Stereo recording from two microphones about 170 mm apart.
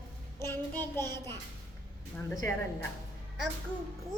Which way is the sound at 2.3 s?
15° left (ahead or behind).